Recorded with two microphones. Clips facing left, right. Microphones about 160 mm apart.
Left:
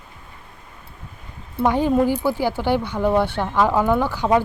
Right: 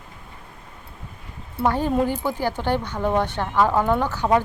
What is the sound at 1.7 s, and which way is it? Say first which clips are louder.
Speech: left 3 dB; 15° left (ahead or behind).